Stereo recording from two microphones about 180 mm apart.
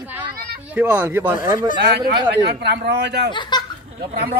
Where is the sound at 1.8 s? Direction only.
65° right (ahead or behind).